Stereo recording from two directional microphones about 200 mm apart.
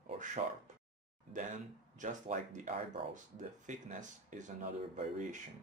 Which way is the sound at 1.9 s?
40° right (ahead or behind).